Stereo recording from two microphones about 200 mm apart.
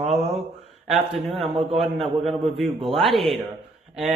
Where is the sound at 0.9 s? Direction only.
Centre (ahead or behind).